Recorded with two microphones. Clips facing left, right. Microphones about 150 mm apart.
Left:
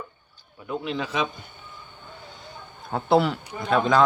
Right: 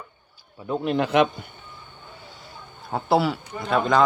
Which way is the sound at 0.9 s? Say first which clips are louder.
Right 8 dB; 60° right (ahead or behind).